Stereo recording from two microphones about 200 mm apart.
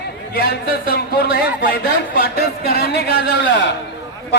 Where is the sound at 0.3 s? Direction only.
50° left (ahead or behind).